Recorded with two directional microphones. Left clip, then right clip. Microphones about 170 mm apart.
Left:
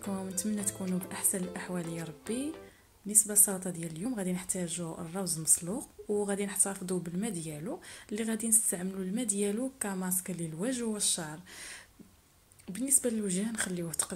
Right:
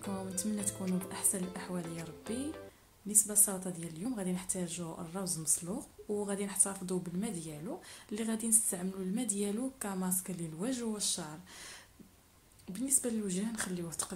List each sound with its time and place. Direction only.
0.0 s a woman's voice: 5° left (ahead or behind)
1.0 s a woman's voice: 15° left (ahead or behind)
3.1 s a woman's voice: 15° left (ahead or behind)
12.7 s a woman's voice: 15° left (ahead or behind)